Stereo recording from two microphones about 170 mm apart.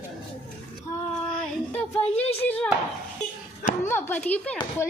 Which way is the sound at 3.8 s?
15° left (ahead or behind).